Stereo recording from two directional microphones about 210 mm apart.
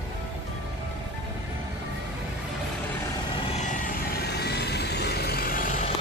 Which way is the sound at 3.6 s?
40° left (ahead or behind).